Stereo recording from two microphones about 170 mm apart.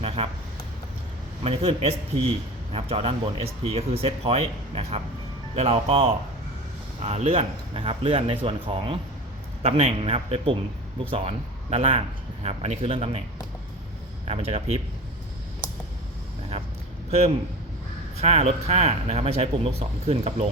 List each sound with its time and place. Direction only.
1.5 s speech: 35° right (ahead or behind)
14.3 s speech: 35° right (ahead or behind)
17.1 s speech: 40° right (ahead or behind)